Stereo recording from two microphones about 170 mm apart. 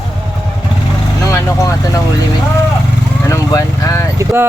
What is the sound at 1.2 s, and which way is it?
Vehicle, 20° left (ahead or behind).